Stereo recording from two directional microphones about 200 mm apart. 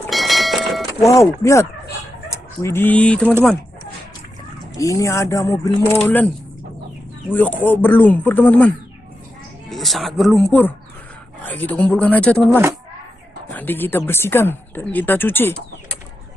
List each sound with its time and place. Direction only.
0.0 s vehicle: centre (ahead or behind)
1.0 s speech: 15° left (ahead or behind)
4.7 s speech: 15° left (ahead or behind)
7.3 s speech: 10° left (ahead or behind)
13.5 s speech: 10° left (ahead or behind)